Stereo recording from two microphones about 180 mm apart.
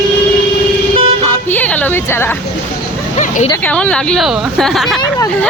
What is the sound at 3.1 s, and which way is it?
Vehicle, 35° left (ahead or behind).